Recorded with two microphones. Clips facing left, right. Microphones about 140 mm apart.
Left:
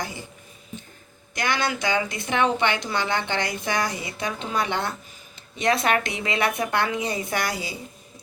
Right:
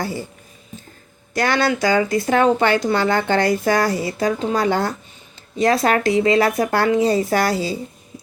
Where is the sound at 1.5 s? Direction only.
40° right (ahead or behind).